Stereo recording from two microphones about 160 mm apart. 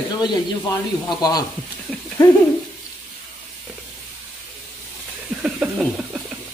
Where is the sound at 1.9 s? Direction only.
Centre (ahead or behind).